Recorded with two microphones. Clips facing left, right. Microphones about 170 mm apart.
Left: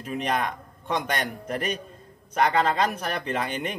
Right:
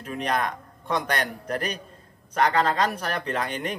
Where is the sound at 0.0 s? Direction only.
5° left (ahead or behind).